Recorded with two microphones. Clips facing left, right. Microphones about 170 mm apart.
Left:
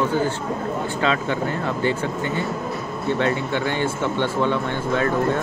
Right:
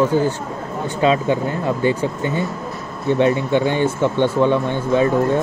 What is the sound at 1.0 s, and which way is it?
Speech, 15° right (ahead or behind).